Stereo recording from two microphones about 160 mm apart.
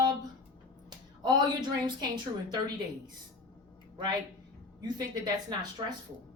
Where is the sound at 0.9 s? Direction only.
25° right (ahead or behind).